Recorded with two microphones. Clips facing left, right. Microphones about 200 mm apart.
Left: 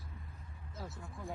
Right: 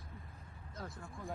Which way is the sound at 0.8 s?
5° left (ahead or behind).